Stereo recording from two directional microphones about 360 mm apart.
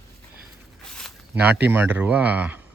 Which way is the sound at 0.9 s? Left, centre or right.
Centre.